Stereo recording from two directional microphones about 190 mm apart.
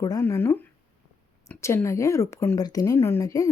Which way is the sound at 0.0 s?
20° left (ahead or behind).